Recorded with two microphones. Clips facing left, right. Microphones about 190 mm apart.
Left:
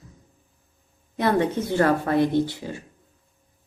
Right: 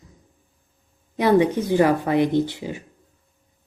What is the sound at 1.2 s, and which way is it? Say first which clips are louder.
Speech: right 4 dB; 15° right (ahead or behind).